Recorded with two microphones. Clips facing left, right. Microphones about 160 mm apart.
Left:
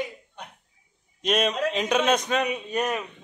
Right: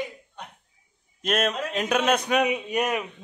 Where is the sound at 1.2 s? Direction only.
5° right (ahead or behind).